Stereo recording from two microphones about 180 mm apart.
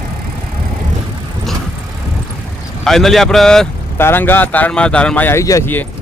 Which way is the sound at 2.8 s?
Centre (ahead or behind).